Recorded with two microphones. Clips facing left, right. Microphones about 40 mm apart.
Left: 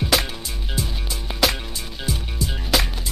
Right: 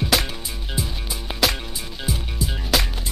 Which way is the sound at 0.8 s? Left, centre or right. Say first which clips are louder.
Even; centre.